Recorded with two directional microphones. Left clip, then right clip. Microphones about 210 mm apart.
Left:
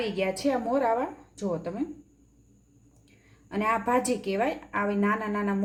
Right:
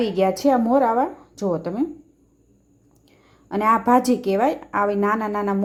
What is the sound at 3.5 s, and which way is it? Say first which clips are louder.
A woman's voice: right 8 dB; 30° right (ahead or behind).